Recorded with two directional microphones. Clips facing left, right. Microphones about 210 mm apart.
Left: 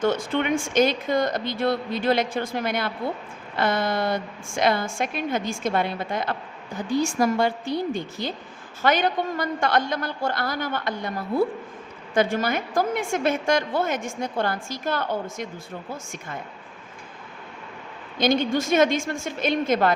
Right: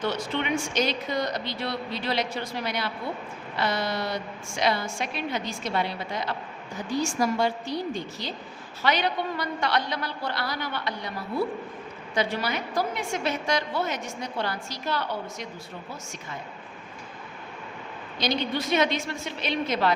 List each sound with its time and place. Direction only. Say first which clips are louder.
0.0 s a woman's voice: left 5 dB; 50° left (ahead or behind)
18.2 s a woman's voice: left 6 dB; 50° left (ahead or behind)